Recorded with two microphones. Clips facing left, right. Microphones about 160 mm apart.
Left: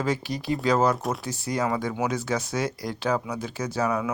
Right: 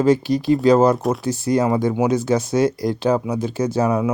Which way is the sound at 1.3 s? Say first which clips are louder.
Right 9 dB; 25° right (ahead or behind).